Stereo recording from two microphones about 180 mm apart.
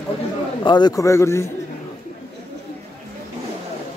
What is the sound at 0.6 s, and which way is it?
Speech, 25° left (ahead or behind).